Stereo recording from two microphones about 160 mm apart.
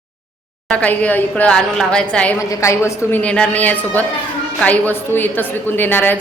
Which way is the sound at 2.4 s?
20° left (ahead or behind).